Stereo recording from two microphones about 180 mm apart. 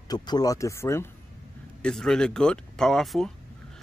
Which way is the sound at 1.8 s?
5° left (ahead or behind).